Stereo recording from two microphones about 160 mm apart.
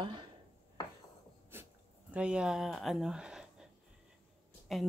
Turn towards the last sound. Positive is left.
turn(degrees=0)  # may be behind; listen again after turning